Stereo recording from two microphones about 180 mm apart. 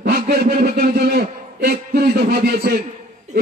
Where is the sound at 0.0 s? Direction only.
60° right (ahead or behind).